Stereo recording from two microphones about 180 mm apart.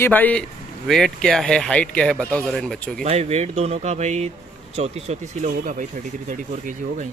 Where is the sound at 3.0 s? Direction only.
35° right (ahead or behind).